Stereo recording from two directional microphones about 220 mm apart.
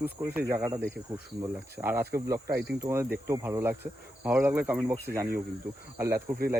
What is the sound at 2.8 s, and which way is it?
Speech, 10° right (ahead or behind).